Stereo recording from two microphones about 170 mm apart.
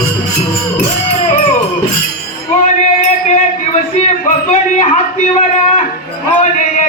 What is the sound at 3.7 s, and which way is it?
Speech, 45° left (ahead or behind).